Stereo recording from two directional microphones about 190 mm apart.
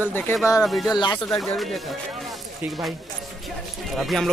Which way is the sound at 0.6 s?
Centre (ahead or behind).